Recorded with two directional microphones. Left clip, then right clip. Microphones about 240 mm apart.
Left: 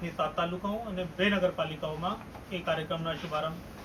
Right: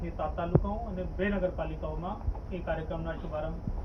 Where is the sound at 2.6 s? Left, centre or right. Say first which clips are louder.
Left 3 dB; centre.